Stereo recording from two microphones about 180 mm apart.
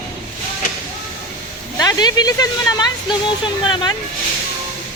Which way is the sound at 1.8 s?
20° left (ahead or behind).